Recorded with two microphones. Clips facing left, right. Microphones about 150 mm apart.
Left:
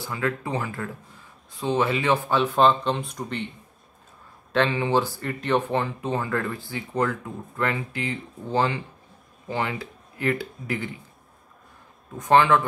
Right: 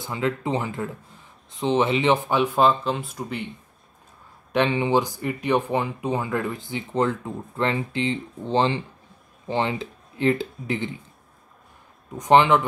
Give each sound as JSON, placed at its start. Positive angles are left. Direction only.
{"t": 0.0, "sound": "speech", "side_deg": -20}
{"t": 4.5, "sound": "speech", "side_deg": -20}
{"t": 12.2, "sound": "speech", "side_deg": -20}